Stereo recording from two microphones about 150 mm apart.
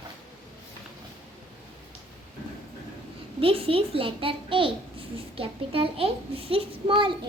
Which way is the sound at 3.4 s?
35° right (ahead or behind).